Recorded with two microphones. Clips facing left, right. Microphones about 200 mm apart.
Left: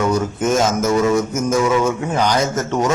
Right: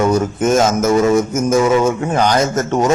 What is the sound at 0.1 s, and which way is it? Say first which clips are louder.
Speech: right 3 dB; 50° right (ahead or behind).